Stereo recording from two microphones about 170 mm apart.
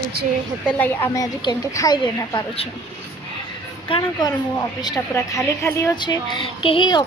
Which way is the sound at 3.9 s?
25° left (ahead or behind).